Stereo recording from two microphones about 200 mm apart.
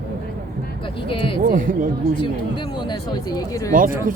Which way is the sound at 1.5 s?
40° right (ahead or behind).